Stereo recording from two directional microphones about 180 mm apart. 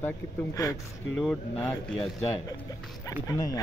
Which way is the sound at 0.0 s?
15° left (ahead or behind).